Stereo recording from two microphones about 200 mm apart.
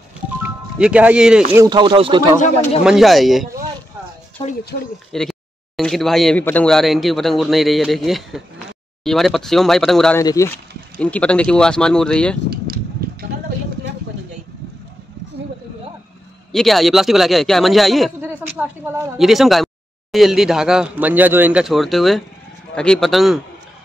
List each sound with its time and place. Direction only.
0.4 s music: 5° right (ahead or behind)
1.5 s speech: 20° right (ahead or behind)
2.8 s speech: centre (ahead or behind)
4.4 s speech: 30° left (ahead or behind)
5.1 s speech: 5° left (ahead or behind)
10.1 s speech: 15° left (ahead or behind)
12.4 s a sound: 50° right (ahead or behind)
16.5 s speech: centre (ahead or behind)